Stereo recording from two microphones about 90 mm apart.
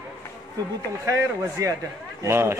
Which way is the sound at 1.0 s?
35° right (ahead or behind).